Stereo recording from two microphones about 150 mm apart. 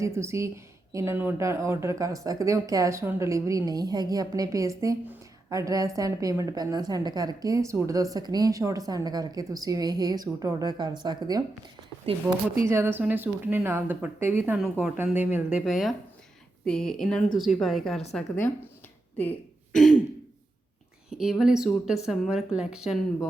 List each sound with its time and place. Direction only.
0.0 s speech: 20° right (ahead or behind)
12.6 s speech: 15° right (ahead or behind); by 18.5 s 10° left (ahead or behind)
19.1 s a sound: 10° left (ahead or behind)
21.1 s speech: 5° right (ahead or behind)